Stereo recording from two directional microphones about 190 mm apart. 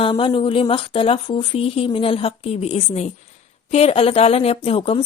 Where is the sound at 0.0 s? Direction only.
25° left (ahead or behind).